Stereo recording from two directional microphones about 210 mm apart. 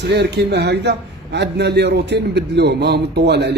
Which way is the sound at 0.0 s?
55° right (ahead or behind).